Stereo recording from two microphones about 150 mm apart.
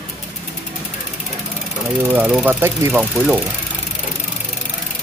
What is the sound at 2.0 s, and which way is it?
Speech, 10° right (ahead or behind).